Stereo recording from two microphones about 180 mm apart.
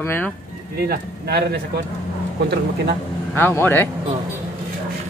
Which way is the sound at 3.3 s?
10° left (ahead or behind).